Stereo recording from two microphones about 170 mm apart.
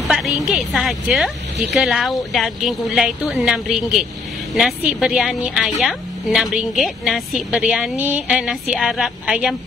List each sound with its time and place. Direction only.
0.1 s a woman's voice: centre (ahead or behind)